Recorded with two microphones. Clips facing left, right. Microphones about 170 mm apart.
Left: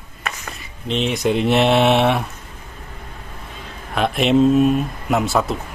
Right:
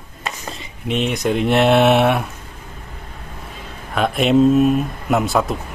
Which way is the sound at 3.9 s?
Centre (ahead or behind).